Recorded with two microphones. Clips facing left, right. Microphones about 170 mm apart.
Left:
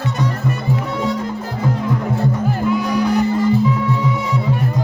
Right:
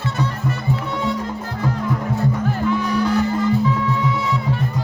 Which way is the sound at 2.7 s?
10° left (ahead or behind).